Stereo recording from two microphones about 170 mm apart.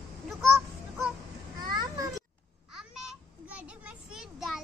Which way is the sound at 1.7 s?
20° right (ahead or behind).